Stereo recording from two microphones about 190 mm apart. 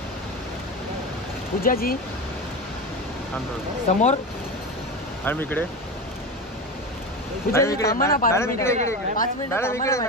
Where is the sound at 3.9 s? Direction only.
40° left (ahead or behind).